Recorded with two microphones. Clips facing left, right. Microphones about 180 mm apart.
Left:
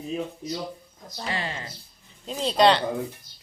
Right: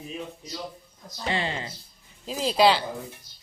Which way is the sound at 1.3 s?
25° right (ahead or behind).